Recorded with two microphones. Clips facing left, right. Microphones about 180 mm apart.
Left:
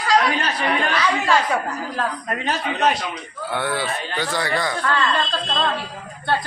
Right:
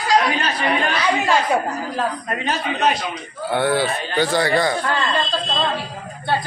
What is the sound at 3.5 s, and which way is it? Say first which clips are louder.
Speech: right 5 dB; 30° right (ahead or behind).